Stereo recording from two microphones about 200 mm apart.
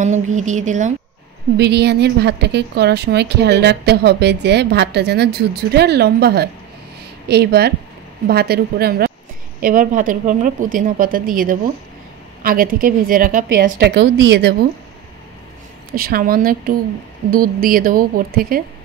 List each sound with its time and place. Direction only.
0.0 s a woman's voice: 35° right (ahead or behind)
1.6 s a woman's voice: 55° right (ahead or behind)
15.9 s a woman's voice: 45° right (ahead or behind)